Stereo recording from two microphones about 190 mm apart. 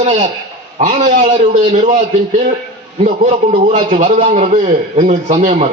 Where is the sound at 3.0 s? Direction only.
35° right (ahead or behind).